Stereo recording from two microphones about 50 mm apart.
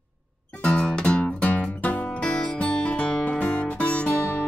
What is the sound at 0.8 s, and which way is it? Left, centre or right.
Music, left.